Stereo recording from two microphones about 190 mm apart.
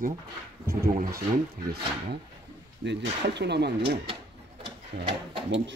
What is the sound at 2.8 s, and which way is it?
Speech, 65° right (ahead or behind).